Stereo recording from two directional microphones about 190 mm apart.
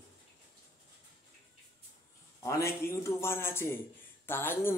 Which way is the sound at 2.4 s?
15° left (ahead or behind).